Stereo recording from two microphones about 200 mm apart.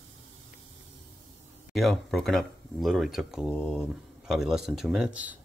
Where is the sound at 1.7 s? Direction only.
Centre (ahead or behind).